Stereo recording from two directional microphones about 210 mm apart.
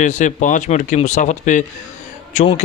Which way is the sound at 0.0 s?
35° left (ahead or behind).